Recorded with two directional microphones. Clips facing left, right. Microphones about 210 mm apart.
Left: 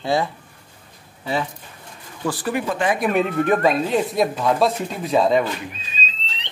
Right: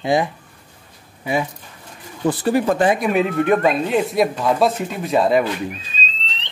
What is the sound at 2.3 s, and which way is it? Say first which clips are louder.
Speech: right 5 dB; 25° right (ahead or behind).